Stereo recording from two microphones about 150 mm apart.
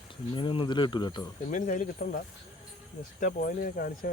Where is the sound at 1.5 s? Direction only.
60° left (ahead or behind).